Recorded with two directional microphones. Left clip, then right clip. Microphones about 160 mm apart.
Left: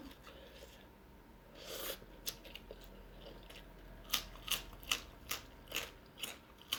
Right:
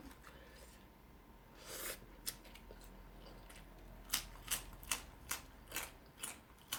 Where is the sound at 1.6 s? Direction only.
15° right (ahead or behind).